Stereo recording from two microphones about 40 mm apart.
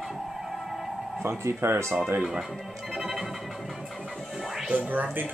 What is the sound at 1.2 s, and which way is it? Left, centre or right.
Speech, right.